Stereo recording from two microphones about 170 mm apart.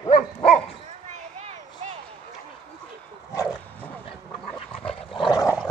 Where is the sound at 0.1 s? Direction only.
45° left (ahead or behind).